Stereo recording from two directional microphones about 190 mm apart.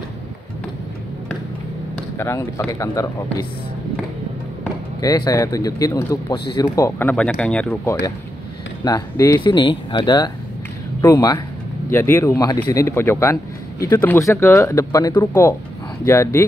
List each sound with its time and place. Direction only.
2.1 s speech: 15° left (ahead or behind)
5.0 s speech: 20° left (ahead or behind)